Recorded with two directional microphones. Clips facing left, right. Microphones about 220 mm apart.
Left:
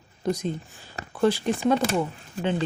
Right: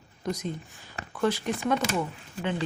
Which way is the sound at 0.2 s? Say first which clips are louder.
Left 5 dB; 30° left (ahead or behind).